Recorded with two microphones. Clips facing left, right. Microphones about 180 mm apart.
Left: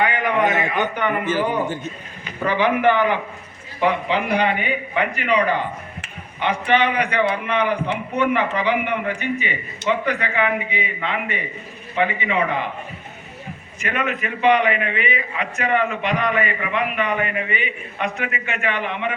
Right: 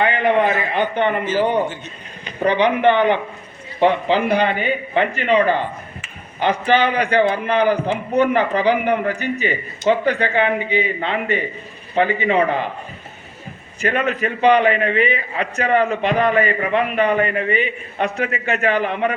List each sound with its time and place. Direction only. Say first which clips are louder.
0.0 s a sound: right 3 dB; 25° right (ahead or behind)
0.7 s a man's voice: right 3 dB; 25° right (ahead or behind)
13.7 s a man's voice: right 5 dB; 35° right (ahead or behind)